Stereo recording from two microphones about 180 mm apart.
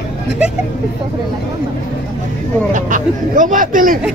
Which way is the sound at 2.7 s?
45° right (ahead or behind).